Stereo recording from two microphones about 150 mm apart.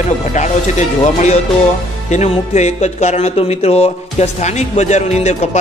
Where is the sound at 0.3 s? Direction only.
50° left (ahead or behind).